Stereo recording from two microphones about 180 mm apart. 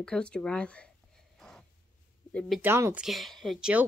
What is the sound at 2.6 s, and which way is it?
Speech, 10° right (ahead or behind).